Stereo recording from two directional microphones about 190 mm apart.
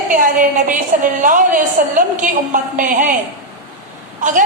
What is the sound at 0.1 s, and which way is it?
A woman's voice, 45° right (ahead or behind).